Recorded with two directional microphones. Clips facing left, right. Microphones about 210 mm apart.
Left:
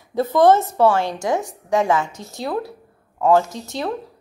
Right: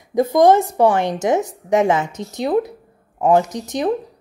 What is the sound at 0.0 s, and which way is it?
A woman's voice, 15° right (ahead or behind).